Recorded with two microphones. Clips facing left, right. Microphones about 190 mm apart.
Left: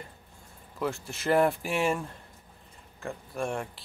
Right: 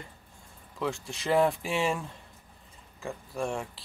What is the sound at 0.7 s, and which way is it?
Speech, centre (ahead or behind).